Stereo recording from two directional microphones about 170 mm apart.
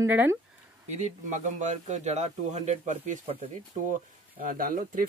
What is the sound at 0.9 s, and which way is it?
Speech, 45° right (ahead or behind).